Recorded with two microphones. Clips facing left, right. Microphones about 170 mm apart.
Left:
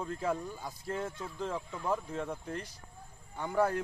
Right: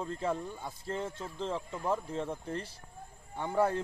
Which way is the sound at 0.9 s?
25° right (ahead or behind).